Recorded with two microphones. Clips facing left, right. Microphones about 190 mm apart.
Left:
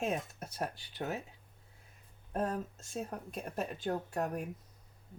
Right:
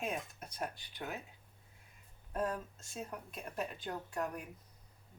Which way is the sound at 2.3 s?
40° left (ahead or behind).